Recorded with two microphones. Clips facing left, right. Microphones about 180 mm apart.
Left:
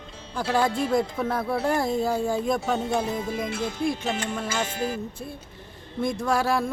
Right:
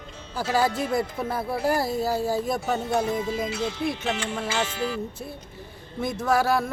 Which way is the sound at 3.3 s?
55° left (ahead or behind).